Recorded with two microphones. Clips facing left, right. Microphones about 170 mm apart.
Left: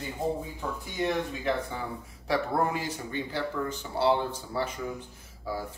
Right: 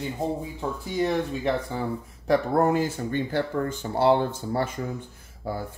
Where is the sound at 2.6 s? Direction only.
45° right (ahead or behind).